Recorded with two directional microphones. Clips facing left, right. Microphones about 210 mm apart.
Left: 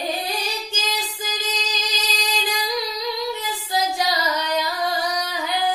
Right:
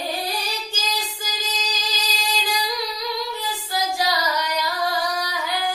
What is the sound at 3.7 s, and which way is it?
Child singing, 20° left (ahead or behind).